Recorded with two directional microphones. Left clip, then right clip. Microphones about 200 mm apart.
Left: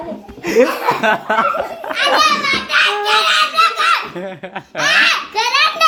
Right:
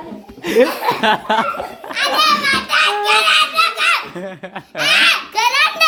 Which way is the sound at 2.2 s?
45° right (ahead or behind).